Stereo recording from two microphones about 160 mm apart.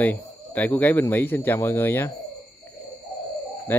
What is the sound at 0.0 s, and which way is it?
Speech, 10° left (ahead or behind).